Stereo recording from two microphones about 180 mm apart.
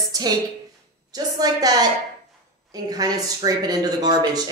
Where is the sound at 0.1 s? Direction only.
20° right (ahead or behind).